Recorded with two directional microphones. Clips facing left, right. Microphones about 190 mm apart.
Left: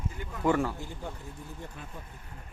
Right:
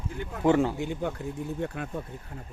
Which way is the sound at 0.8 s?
70° right (ahead or behind).